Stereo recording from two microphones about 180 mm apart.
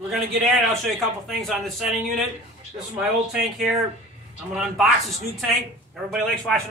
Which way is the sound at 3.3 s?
Centre (ahead or behind).